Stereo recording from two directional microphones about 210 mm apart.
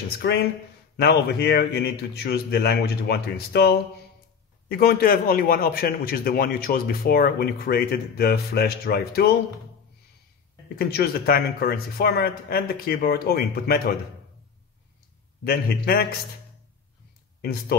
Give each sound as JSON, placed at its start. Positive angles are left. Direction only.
{"t": 0.2, "sound": "a man's voice", "side_deg": 50}
{"t": 10.8, "sound": "a man's voice", "side_deg": 45}
{"t": 15.4, "sound": "a man's voice", "side_deg": 45}
{"t": 17.4, "sound": "speech", "side_deg": 45}